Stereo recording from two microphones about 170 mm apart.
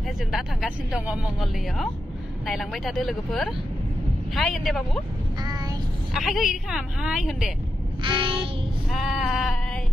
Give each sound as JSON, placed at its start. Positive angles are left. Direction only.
{"t": 0.3, "sound": "speech", "side_deg": 0}
{"t": 5.4, "sound": "child singing", "side_deg": -20}
{"t": 6.1, "sound": "speech", "side_deg": 0}
{"t": 8.0, "sound": "child singing", "side_deg": -30}
{"t": 8.9, "sound": "speech", "side_deg": 0}